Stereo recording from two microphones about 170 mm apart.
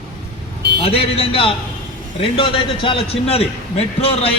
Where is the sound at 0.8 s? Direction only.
35° left (ahead or behind).